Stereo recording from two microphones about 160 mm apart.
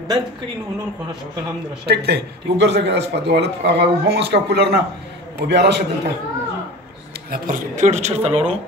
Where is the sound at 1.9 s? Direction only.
90° right.